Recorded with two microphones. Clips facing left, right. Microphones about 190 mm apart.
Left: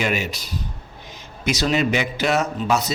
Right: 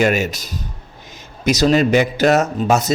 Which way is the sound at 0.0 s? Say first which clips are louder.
Right 7 dB; 45° right (ahead or behind).